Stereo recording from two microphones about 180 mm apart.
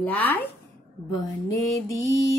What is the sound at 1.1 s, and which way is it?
Mantra, 20° left (ahead or behind).